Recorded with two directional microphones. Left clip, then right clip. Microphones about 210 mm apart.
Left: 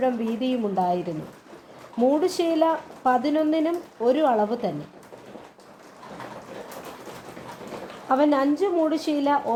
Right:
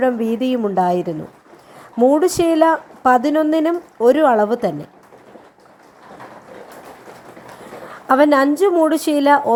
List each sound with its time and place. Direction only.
0.0 s a woman's voice: 30° right (ahead or behind)
8.0 s a woman's voice: 35° right (ahead or behind)